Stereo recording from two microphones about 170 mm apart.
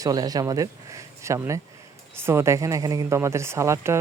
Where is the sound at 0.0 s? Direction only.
20° right (ahead or behind).